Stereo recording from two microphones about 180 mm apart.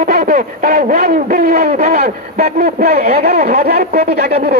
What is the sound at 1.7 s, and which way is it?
Speech, 35° right (ahead or behind).